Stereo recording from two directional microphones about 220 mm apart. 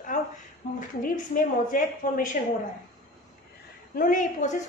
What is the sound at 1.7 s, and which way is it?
Speech, 35° left (ahead or behind).